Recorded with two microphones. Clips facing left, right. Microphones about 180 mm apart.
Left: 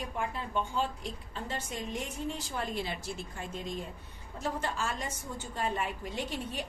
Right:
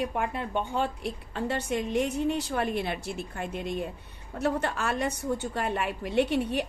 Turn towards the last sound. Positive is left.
turn(degrees=-65)  # may be behind; listen again after turning